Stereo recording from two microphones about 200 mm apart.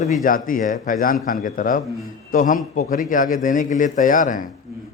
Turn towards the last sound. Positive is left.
turn(degrees=40)  # may be behind; listen again after turning